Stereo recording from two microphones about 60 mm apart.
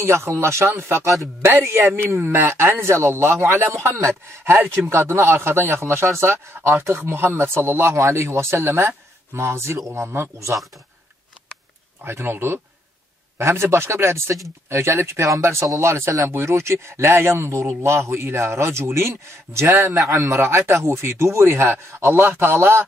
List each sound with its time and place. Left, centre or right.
0.0 s speech: right
12.0 s speech: right
20.0 s a man's voice: right
20.3 s speech: right